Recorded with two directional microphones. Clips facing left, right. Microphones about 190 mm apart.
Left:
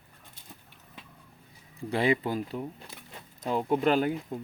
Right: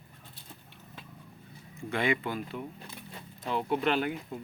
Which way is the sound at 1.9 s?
35° left (ahead or behind).